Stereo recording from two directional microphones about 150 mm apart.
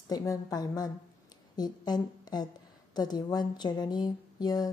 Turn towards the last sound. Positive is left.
turn(degrees=25)  # may be behind; listen again after turning